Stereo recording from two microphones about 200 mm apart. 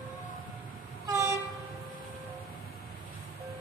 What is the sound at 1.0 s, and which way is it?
Train, 15° right (ahead or behind).